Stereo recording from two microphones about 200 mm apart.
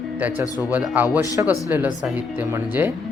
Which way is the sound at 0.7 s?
10° right (ahead or behind).